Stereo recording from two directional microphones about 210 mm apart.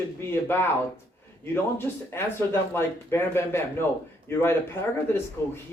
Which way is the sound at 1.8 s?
10° left (ahead or behind).